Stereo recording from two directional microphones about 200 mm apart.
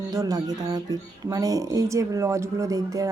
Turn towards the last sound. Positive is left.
turn(degrees=-15)  # may be behind; listen again after turning